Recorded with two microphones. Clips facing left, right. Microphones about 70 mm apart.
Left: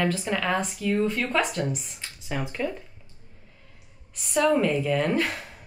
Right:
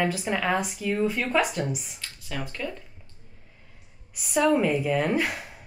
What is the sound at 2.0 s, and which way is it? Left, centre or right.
Speech, centre.